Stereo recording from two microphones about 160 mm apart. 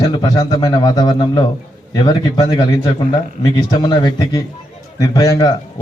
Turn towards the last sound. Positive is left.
turn(degrees=20)  # may be behind; listen again after turning